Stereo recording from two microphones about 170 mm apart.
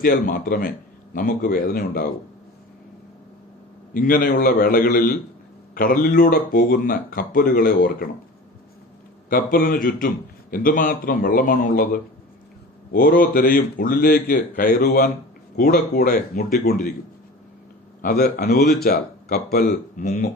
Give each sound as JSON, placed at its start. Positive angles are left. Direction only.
{"t": 0.0, "sound": "speech", "side_deg": 50}
{"t": 3.9, "sound": "speech", "side_deg": 55}
{"t": 9.3, "sound": "speech", "side_deg": 55}
{"t": 18.0, "sound": "speech", "side_deg": 60}